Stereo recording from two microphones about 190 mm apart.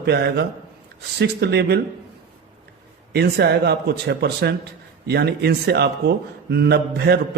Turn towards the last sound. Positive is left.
turn(degrees=-60)  # may be behind; listen again after turning